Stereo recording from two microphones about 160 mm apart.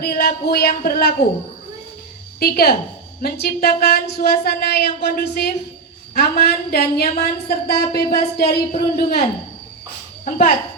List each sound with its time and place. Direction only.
0.0 s speech: 75° left (ahead or behind)
2.4 s a woman's voice: 70° left (ahead or behind); by 5.5 s 90° left
6.1 s speech: 80° left
8.4 s speech: 50° left (ahead or behind)
10.2 s speech: 50° left (ahead or behind)